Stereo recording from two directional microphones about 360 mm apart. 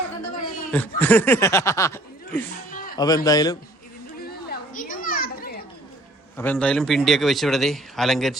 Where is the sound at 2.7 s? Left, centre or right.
Left.